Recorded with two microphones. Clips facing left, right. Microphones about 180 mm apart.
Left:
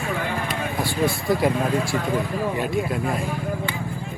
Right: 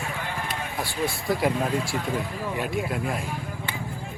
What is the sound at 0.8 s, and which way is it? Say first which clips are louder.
Speech: left 5 dB; 5° right (ahead or behind).